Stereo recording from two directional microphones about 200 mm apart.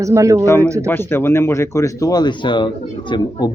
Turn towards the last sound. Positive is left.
turn(degrees=20)  # may be behind; listen again after turning